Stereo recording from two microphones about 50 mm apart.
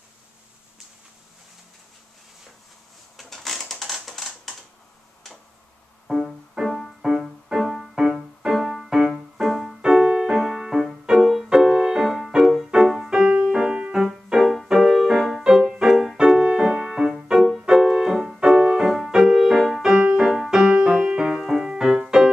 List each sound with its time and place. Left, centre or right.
3.2 s a sound: centre
6.1 s music: centre
6.6 s music: centre
9.8 s music: centre
15.1 s music: centre
15.4 s music: centre